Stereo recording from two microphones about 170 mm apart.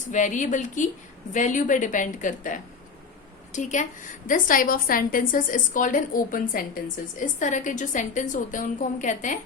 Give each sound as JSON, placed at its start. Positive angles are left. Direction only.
{"t": 0.1, "sound": "a woman's voice", "side_deg": 45}